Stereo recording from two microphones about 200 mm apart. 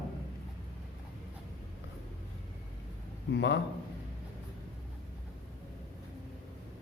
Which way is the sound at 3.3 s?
60° left (ahead or behind).